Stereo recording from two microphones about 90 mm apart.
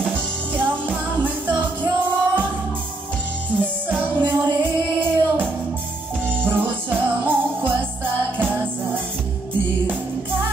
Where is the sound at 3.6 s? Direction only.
20° right (ahead or behind).